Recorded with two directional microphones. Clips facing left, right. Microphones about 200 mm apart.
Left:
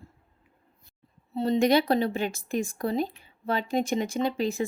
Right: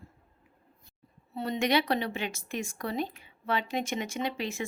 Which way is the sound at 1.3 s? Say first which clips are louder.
Left 6 dB; 30° left (ahead or behind).